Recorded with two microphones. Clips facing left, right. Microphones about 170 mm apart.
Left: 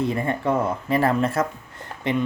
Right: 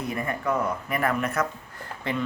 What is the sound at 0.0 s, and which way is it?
Speech, 25° left (ahead or behind).